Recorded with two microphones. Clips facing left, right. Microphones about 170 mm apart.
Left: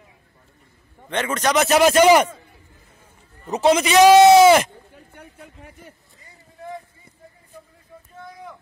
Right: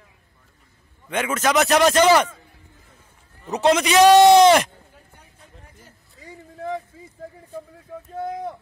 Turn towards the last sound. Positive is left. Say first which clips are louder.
# right 11 dB
turn(degrees=-90)